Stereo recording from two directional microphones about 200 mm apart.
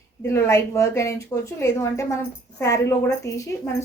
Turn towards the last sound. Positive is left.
turn(degrees=15)  # may be behind; listen again after turning